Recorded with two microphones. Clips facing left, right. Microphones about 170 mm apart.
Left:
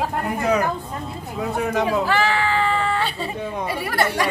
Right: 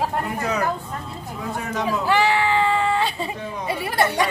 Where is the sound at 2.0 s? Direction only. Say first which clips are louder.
Right 1 dB; 15° right (ahead or behind).